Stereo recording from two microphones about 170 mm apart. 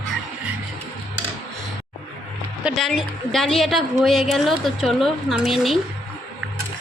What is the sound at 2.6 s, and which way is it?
A woman's voice, centre (ahead or behind).